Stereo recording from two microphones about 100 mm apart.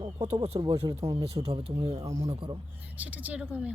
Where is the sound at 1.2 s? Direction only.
90° right.